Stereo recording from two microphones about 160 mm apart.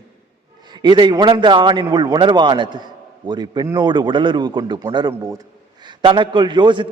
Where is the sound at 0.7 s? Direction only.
25° right (ahead or behind).